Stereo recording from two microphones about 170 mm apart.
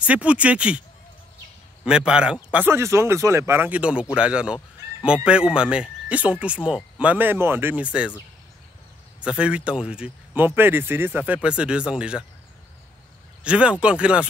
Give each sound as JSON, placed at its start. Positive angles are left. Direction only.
{"t": 0.0, "sound": "speech", "side_deg": -5}
{"t": 1.9, "sound": "speech", "side_deg": -5}
{"t": 9.2, "sound": "speech", "side_deg": -5}
{"t": 13.4, "sound": "speech", "side_deg": -5}